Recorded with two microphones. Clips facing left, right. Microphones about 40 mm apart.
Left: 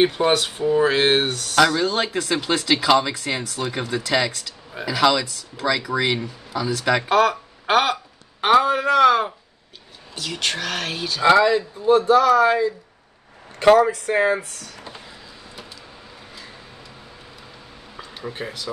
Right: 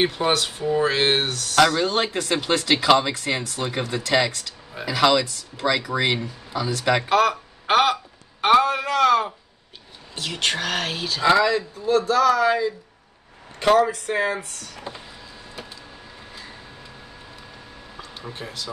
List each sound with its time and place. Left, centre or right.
0.0 s speech: centre
1.6 s speech: centre
8.5 s a man's voice: centre
10.1 s speech: centre
11.2 s speech: left
12.1 s speech: left
13.7 s speech: left
13.9 s speech: left
17.9 s a sound: centre